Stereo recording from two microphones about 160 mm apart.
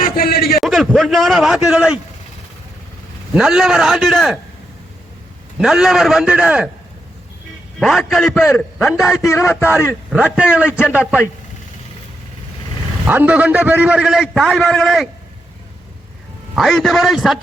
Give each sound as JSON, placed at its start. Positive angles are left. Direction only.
{"t": 0.0, "sound": "a man's voice", "side_deg": 70}
{"t": 0.6, "sound": "a man's voice", "side_deg": 0}
{"t": 3.3, "sound": "a man's voice", "side_deg": 0}
{"t": 5.5, "sound": "a man's voice", "side_deg": -5}
{"t": 7.8, "sound": "a man's voice", "side_deg": 0}
{"t": 9.0, "sound": "a man's voice", "side_deg": 20}
{"t": 10.1, "sound": "a man's voice", "side_deg": -5}
{"t": 13.1, "sound": "a man's voice", "side_deg": -10}
{"t": 16.6, "sound": "a man's voice", "side_deg": 0}